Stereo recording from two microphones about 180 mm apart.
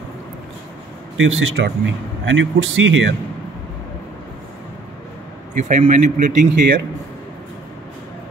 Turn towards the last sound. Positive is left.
turn(degrees=-45)  # may be behind; listen again after turning